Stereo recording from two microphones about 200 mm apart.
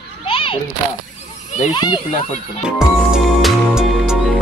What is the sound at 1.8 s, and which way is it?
Speech, 20° left (ahead or behind).